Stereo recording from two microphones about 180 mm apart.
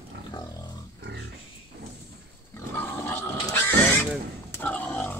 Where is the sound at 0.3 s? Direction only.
20° left (ahead or behind).